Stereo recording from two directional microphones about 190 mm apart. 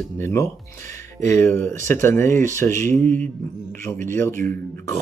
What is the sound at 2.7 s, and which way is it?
Speech, 40° right (ahead or behind).